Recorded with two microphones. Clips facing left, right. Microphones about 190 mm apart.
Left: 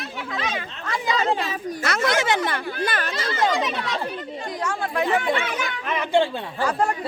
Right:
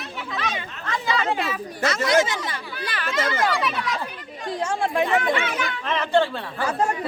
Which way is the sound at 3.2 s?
25° left (ahead or behind).